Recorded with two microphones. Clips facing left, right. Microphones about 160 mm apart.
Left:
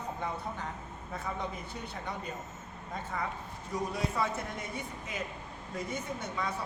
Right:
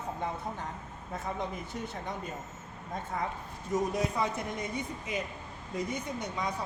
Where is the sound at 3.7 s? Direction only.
20° right (ahead or behind).